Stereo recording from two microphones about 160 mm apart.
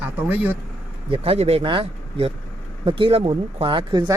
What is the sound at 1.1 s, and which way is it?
Speech, 40° right (ahead or behind).